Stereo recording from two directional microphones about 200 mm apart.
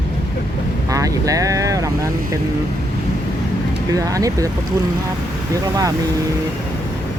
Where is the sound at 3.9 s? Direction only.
15° right (ahead or behind).